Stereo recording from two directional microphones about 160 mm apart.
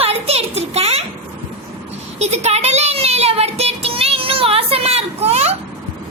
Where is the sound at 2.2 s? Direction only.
45° right (ahead or behind).